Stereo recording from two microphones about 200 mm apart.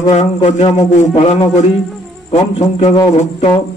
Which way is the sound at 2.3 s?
35° left (ahead or behind).